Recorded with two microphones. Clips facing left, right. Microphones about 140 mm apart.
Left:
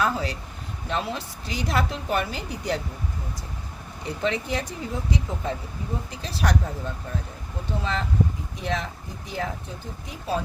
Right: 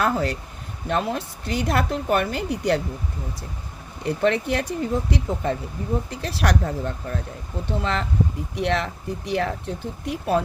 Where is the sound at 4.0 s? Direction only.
60° right (ahead or behind).